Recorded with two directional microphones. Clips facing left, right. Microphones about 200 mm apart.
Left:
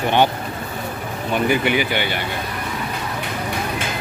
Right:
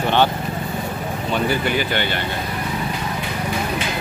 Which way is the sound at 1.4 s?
15° left (ahead or behind).